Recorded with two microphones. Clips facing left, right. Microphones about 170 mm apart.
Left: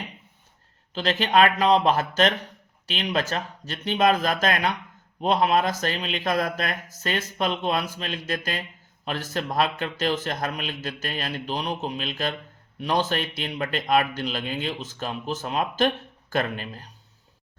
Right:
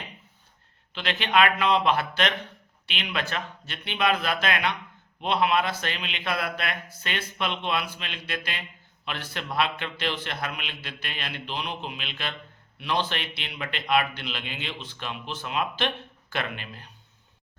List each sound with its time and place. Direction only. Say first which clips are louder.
0.9 s speech: left 3 dB; 40° left (ahead or behind)